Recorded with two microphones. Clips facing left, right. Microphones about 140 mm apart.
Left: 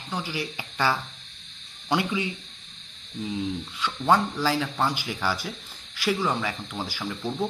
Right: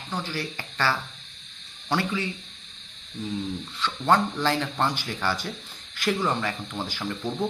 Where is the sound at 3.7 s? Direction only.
10° left (ahead or behind).